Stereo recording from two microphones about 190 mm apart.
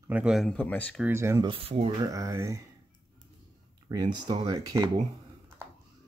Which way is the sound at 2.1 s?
15° right (ahead or behind).